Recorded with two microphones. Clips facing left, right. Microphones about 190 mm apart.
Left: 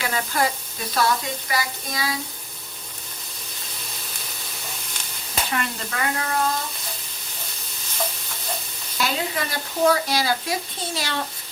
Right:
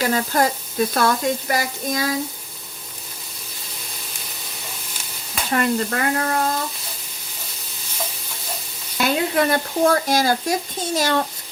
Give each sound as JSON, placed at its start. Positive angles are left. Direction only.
{"t": 0.0, "sound": "speech", "side_deg": -40}
{"t": 5.5, "sound": "speech", "side_deg": -45}
{"t": 9.0, "sound": "speech", "side_deg": -55}